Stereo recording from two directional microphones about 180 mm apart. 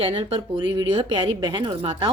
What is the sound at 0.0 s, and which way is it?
Speech, 30° right (ahead or behind).